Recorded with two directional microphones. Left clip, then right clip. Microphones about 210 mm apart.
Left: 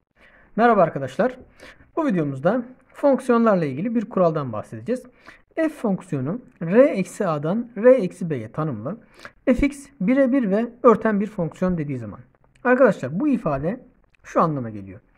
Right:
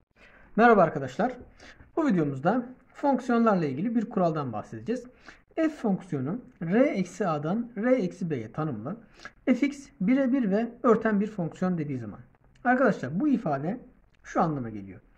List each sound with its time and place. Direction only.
0.2 s speech: 25° left (ahead or behind); by 15.0 s 40° left (ahead or behind)